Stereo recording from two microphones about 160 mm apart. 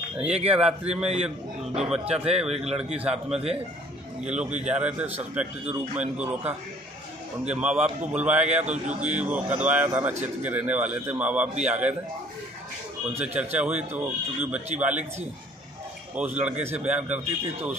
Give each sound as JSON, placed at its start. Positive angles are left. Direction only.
{"t": 0.2, "sound": "speech", "side_deg": -40}
{"t": 3.0, "sound": "a man's voice", "side_deg": -5}
{"t": 4.6, "sound": "a man's voice", "side_deg": -10}
{"t": 8.5, "sound": "a man's voice", "side_deg": -45}
{"t": 9.1, "sound": "a man's voice", "side_deg": -10}
{"t": 13.2, "sound": "a man's voice", "side_deg": -10}
{"t": 16.2, "sound": "a man's voice", "side_deg": -10}